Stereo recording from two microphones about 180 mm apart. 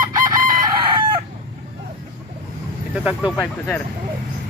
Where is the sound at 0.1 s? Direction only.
20° right (ahead or behind).